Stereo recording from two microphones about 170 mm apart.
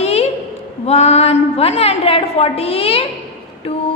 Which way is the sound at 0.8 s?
40° left (ahead or behind).